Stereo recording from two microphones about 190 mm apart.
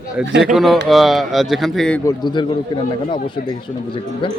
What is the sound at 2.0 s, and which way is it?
Speech, 25° left (ahead or behind).